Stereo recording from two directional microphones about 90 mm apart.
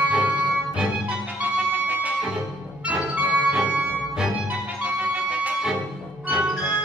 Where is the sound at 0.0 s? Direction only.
15° right (ahead or behind).